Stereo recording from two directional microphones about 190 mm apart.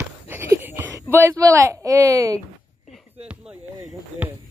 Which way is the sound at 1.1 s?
15° right (ahead or behind).